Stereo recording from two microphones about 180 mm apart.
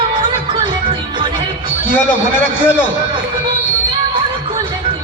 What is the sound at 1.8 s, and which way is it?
Speech, 10° left (ahead or behind).